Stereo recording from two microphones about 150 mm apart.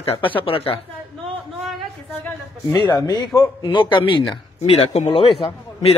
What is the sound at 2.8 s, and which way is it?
Speech, 20° left (ahead or behind).